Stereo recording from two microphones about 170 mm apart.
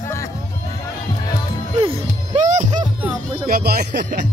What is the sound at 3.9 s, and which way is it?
Speech, 80° right.